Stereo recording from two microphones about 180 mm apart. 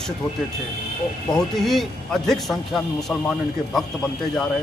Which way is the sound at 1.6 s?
Centre (ahead or behind).